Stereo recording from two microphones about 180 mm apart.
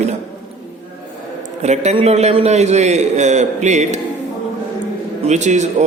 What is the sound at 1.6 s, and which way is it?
Speech, 40° right (ahead or behind).